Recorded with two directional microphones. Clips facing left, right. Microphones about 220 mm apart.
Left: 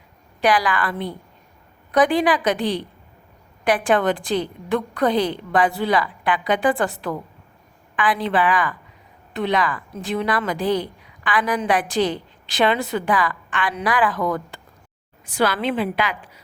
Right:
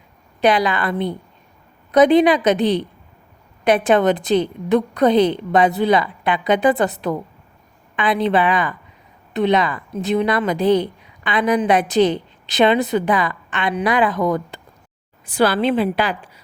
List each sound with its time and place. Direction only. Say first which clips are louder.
0.4 s a woman's voice: right 3 dB; 25° right (ahead or behind)
15.3 s a woman's voice: right 4 dB; 30° right (ahead or behind)